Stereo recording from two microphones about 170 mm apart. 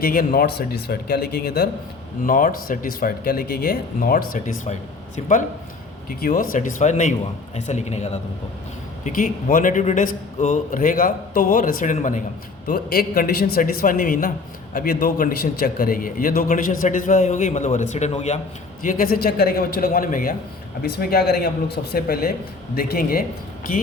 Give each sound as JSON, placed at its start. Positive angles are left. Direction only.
{"t": 0.0, "sound": "speech", "side_deg": 55}
{"t": 2.2, "sound": "speech", "side_deg": 55}
{"t": 6.1, "sound": "a man's voice", "side_deg": 55}
{"t": 12.6, "sound": "a man's voice", "side_deg": 60}
{"t": 18.8, "sound": "speech", "side_deg": 55}
{"t": 20.8, "sound": "speech", "side_deg": 70}